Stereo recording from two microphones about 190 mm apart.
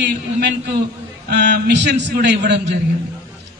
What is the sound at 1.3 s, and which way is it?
A man's voice, 65° right (ahead or behind).